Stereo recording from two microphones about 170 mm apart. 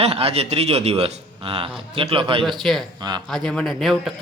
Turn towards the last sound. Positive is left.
turn(degrees=0)  # may be behind; listen again after turning